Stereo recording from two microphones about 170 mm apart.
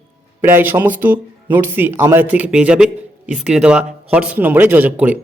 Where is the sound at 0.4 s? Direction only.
10° right (ahead or behind).